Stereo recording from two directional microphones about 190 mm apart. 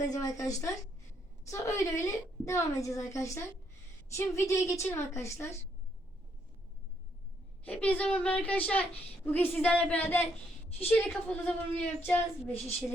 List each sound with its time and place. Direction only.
0.0 s a woman's voice: 20° left (ahead or behind)
7.6 s a woman's voice: 10° left (ahead or behind)